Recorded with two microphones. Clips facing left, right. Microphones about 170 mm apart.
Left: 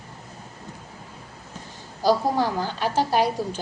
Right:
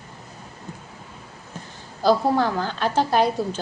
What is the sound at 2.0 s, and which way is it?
A woman's voice, 15° left (ahead or behind).